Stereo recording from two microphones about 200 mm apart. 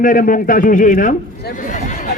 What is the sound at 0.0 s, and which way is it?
A man's voice, 40° left (ahead or behind).